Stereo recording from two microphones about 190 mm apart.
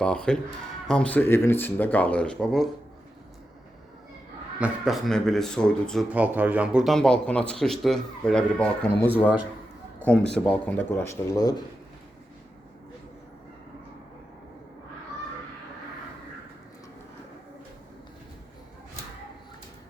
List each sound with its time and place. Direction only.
0.0 s speech: 5° left (ahead or behind)
4.6 s speech: centre (ahead or behind)
10.3 s speech: 5° left (ahead or behind)